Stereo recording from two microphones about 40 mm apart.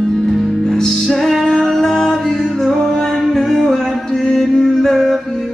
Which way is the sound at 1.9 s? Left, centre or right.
Centre.